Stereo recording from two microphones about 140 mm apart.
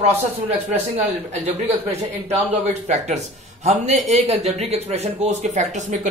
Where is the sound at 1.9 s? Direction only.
45° right (ahead or behind).